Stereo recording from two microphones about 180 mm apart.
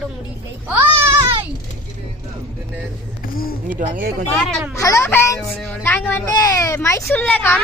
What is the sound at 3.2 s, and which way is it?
Speech, 55° left (ahead or behind).